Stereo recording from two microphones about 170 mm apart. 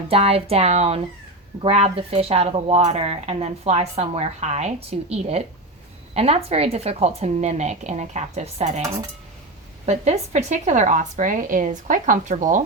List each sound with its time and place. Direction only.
0.1 s speech: 35° right (ahead or behind)
9.8 s a woman's voice: 40° right (ahead or behind)